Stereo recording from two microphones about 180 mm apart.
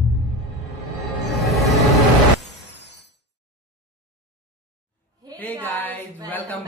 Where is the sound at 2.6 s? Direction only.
70° left (ahead or behind).